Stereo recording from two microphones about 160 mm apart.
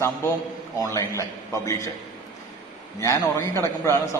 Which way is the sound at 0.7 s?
20° left (ahead or behind).